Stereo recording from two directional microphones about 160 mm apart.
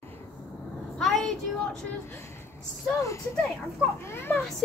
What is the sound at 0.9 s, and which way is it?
Vehicle, centre (ahead or behind).